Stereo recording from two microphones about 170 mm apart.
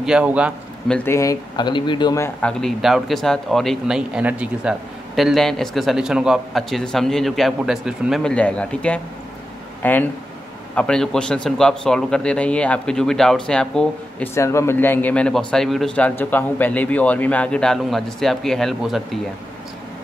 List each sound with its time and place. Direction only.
0.0 s a man's voice: 5° right (ahead or behind)
0.8 s speech: 10° left (ahead or behind); by 2.1 s 25° left (ahead or behind)
2.1 s speech: 15° left (ahead or behind)
2.6 s speech: centre (ahead or behind)
14.3 s speech: 15° left (ahead or behind); by 19.0 s centre (ahead or behind)